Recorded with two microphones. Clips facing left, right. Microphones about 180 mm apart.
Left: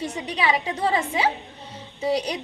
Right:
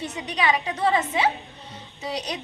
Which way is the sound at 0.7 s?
10° left (ahead or behind).